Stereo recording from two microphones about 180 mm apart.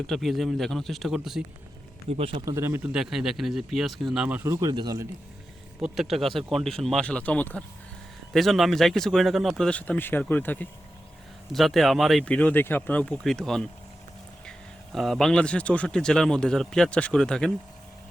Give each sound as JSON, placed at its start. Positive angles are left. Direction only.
{"t": 0.1, "sound": "speech", "side_deg": 0}
{"t": 2.0, "sound": "speech", "side_deg": -35}
{"t": 2.4, "sound": "speech", "side_deg": -15}
{"t": 5.8, "sound": "speech", "side_deg": 0}
{"t": 14.9, "sound": "speech", "side_deg": 0}